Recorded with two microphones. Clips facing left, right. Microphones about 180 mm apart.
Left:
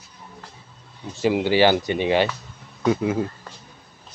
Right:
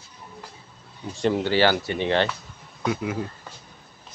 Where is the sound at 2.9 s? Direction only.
30° left (ahead or behind).